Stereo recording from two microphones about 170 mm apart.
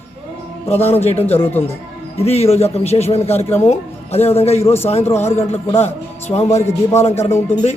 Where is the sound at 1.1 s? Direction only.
10° left (ahead or behind).